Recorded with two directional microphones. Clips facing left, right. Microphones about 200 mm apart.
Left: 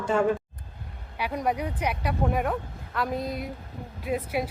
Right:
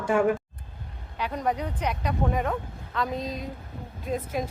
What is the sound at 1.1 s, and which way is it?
Speech, 10° left (ahead or behind).